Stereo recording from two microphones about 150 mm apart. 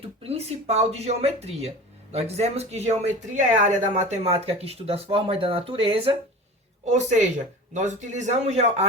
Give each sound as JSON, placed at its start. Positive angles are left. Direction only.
{"t": 0.0, "sound": "speech", "side_deg": -40}
{"t": 6.8, "sound": "speech", "side_deg": -50}